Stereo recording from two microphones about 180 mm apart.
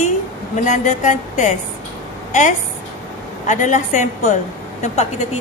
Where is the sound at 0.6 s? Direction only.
40° left (ahead or behind).